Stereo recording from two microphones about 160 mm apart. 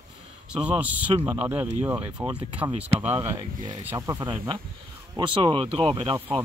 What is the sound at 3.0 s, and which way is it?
Speech, 15° right (ahead or behind).